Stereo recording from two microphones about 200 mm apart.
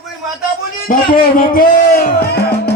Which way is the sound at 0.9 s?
45° left (ahead or behind).